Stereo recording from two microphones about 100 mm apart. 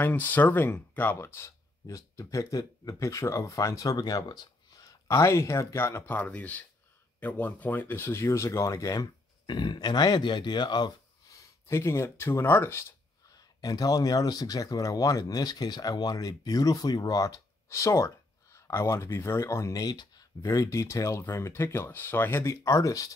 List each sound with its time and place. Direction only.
0.0 s speech: 20° left (ahead or behind); by 4.9 s 40° left (ahead or behind)
5.0 s speech: 30° left (ahead or behind); by 11.3 s 45° left (ahead or behind)
11.6 s speech: 25° left (ahead or behind)
13.6 s speech: 40° left (ahead or behind)